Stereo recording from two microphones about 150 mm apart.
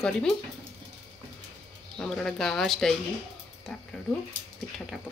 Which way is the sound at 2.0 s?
5° left (ahead or behind).